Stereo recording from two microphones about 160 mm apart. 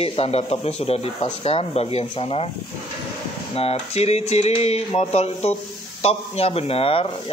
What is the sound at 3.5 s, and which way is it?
Speech, 40° left (ahead or behind).